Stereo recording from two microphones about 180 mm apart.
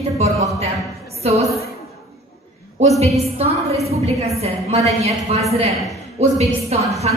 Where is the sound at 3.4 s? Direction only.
35° right (ahead or behind).